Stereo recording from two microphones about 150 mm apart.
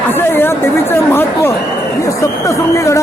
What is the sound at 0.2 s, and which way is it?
Chatter, 15° left (ahead or behind).